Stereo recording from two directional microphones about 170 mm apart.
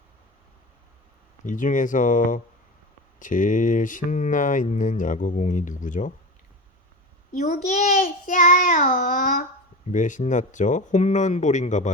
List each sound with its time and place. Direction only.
1.5 s speech: 50° left (ahead or behind)
7.3 s speech: 45° left (ahead or behind)